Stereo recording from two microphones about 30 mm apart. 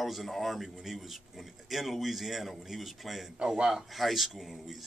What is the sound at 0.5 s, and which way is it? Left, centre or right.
Speech, centre.